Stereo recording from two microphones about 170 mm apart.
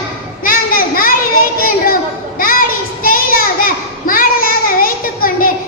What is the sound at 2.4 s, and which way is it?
Child singing, 55° left (ahead or behind).